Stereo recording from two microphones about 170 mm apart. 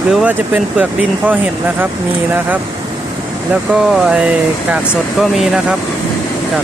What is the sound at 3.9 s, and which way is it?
Speech, 5° right (ahead or behind).